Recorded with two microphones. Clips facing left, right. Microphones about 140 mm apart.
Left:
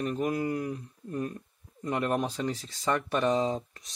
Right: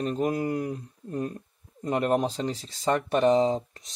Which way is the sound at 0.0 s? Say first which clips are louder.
Right 3 dB; 30° right (ahead or behind).